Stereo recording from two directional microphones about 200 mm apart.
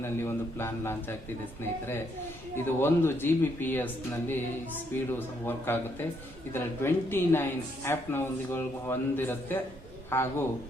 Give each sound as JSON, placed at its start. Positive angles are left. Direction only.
{"t": 0.0, "sound": "speech", "side_deg": 10}
{"t": 2.6, "sound": "speech", "side_deg": 10}
{"t": 5.5, "sound": "speech", "side_deg": 10}